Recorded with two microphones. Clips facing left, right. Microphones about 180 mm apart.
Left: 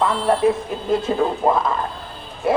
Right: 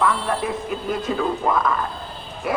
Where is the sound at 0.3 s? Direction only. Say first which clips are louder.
Left 7 dB; 25° left (ahead or behind).